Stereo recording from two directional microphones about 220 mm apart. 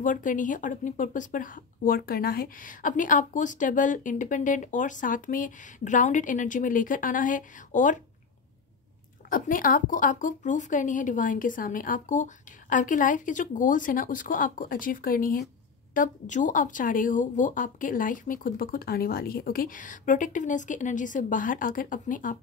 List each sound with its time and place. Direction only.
0.0 s speech: 35° left (ahead or behind)
9.3 s speech: 40° left (ahead or behind)